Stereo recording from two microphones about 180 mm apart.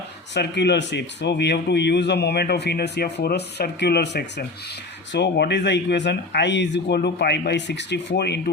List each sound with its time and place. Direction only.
0.3 s speech: 70° left (ahead or behind)